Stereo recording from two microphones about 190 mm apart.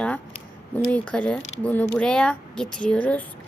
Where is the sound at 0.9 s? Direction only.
5° left (ahead or behind).